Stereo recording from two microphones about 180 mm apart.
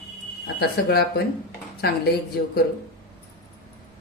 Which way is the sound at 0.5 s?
60° left (ahead or behind).